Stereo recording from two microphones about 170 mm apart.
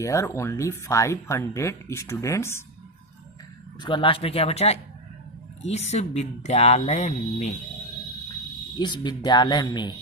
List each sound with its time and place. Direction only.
0.0 s speech: 15° left (ahead or behind)
3.8 s speech: 30° left (ahead or behind)
8.8 s speech: 25° left (ahead or behind)